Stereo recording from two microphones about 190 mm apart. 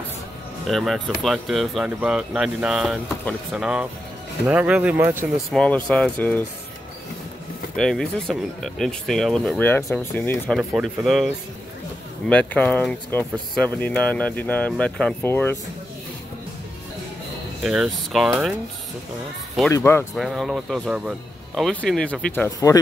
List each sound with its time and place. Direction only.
0.7 s speech: centre (ahead or behind)
5.5 s speech: 5° left (ahead or behind)
7.7 s speech: 5° left (ahead or behind)
10.6 s speech: centre (ahead or behind)
12.3 s speech: 5° left (ahead or behind)
17.6 s speech: centre (ahead or behind)
19.7 s speech: 10° left (ahead or behind)
20.2 s speech: centre (ahead or behind); by 22.8 s 15° left (ahead or behind)